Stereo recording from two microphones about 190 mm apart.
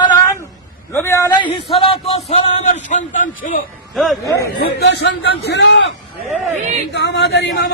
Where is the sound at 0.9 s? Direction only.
15° left (ahead or behind).